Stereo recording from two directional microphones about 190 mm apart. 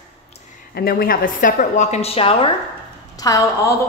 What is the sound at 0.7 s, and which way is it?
A woman's voice, 55° left (ahead or behind).